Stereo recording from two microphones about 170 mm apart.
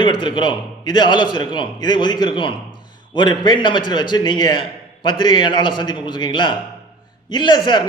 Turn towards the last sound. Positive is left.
turn(degrees=25)  # may be behind; listen again after turning